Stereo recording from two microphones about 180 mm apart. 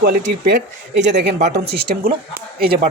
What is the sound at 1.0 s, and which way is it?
Speech, 70° right (ahead or behind).